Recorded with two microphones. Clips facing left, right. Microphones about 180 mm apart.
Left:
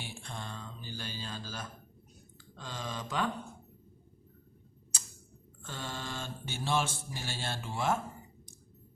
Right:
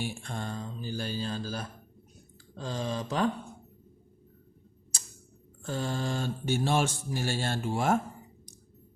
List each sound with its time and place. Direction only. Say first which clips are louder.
0.0 s mantra: right 8 dB; 45° right (ahead or behind)
2.6 s speech: right 7 dB; 35° right (ahead or behind)
5.6 s mantra: right 9 dB; 35° right (ahead or behind)